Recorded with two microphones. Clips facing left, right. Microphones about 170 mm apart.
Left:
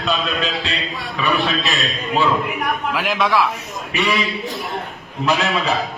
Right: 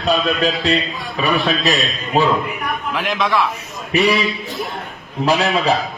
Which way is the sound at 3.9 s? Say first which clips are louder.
Right 5 dB; 35° right (ahead or behind).